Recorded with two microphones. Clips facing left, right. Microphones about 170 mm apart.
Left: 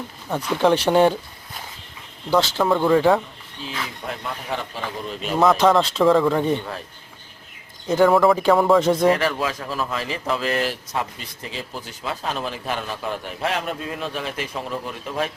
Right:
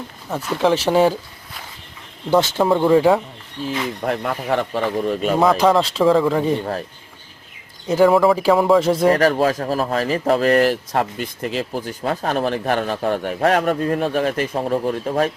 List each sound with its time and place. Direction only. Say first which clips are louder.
0.3 s speech: even; centre (ahead or behind)
2.3 s speech: right 3 dB; 20° right (ahead or behind)
4.0 s speech: right 8 dB; 60° right (ahead or behind)
5.4 s speech: even; centre (ahead or behind)
6.6 s speech: right 7 dB; 40° right (ahead or behind)
7.9 s speech: right 2 dB; 5° right (ahead or behind)
9.1 s speech: right 7 dB; 40° right (ahead or behind)